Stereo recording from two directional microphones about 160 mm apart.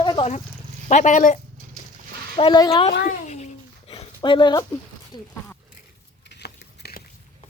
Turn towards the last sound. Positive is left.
turn(degrees=75)  # may be behind; listen again after turning